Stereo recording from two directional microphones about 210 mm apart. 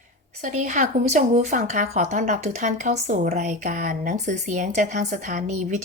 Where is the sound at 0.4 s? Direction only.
35° right (ahead or behind).